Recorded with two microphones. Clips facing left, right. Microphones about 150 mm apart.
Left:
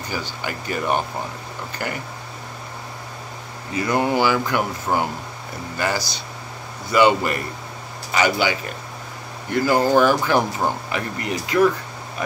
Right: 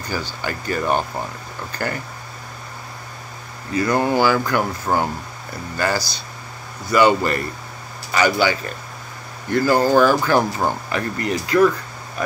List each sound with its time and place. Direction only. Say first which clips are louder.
0.4 s speech: right 3 dB; 15° left (ahead or behind)
3.7 s a man's voice: right 2 dB; 20° left (ahead or behind)